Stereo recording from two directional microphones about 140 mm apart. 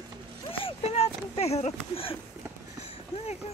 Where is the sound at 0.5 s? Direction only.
45° left (ahead or behind).